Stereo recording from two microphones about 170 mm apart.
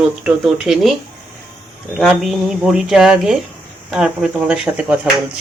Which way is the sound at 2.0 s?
Centre (ahead or behind).